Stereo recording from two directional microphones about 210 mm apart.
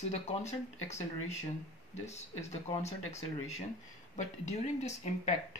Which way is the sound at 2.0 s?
30° left (ahead or behind).